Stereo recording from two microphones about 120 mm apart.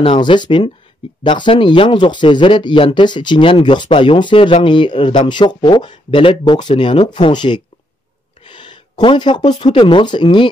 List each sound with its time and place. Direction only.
0.0 s speech: 40° left (ahead or behind)
8.5 s a sound: 40° left (ahead or behind)
9.6 s speech: 40° left (ahead or behind)